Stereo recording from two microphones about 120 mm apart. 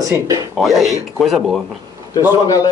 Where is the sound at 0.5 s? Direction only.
Centre (ahead or behind).